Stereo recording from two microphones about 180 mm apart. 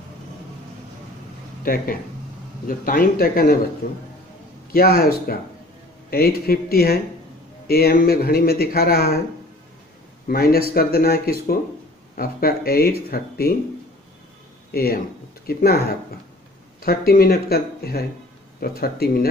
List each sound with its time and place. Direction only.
1.6 s speech: 55° left (ahead or behind)
10.2 s speech: 55° left (ahead or behind)
14.7 s speech: 55° left (ahead or behind)
16.8 s speech: 55° left (ahead or behind)